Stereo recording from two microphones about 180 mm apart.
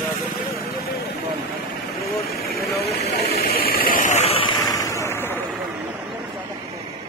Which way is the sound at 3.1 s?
55° left (ahead or behind).